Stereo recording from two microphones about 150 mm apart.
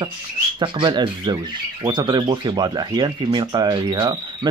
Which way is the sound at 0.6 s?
30° right (ahead or behind).